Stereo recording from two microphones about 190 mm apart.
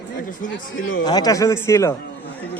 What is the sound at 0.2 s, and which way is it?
Speech, 45° left (ahead or behind).